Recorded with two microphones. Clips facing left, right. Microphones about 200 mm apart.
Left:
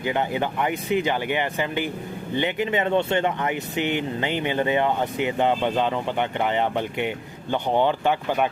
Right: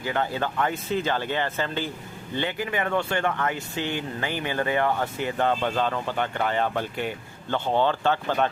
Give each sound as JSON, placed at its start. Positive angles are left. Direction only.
{"t": 0.0, "sound": "speech", "side_deg": 15}